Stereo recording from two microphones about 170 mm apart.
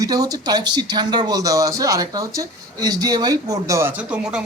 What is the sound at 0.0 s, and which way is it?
Speech, 20° right (ahead or behind).